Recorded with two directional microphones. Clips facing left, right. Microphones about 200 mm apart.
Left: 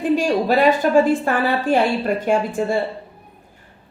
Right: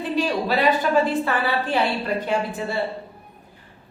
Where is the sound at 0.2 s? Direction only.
45° left (ahead or behind).